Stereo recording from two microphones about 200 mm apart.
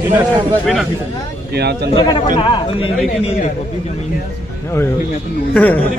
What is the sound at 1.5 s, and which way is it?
Speech, 55° right (ahead or behind).